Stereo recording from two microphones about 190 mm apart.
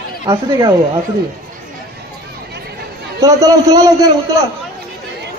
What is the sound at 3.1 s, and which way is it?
Speech, 20° right (ahead or behind).